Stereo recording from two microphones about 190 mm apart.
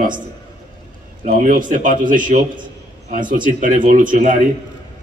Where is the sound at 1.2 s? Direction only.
45° right (ahead or behind).